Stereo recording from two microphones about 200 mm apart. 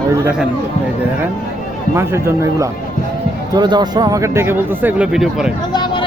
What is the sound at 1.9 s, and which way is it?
Speech, 15° right (ahead or behind).